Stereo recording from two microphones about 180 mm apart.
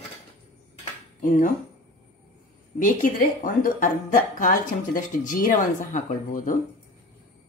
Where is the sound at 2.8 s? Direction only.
50° left (ahead or behind).